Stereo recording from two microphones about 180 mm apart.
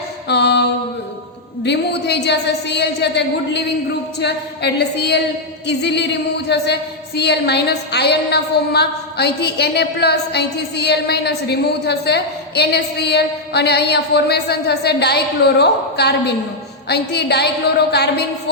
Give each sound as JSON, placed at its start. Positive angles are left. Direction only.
{"t": 0.3, "sound": "mantra", "side_deg": 70}
{"t": 1.6, "sound": "a woman's voice", "side_deg": 70}